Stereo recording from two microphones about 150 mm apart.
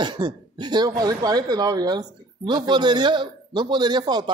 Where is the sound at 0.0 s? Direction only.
30° right (ahead or behind).